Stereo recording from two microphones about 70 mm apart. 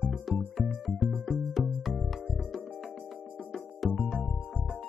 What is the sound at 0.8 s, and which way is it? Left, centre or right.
Music, centre.